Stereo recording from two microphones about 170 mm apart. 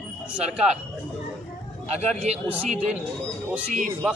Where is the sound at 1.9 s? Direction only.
40° right (ahead or behind).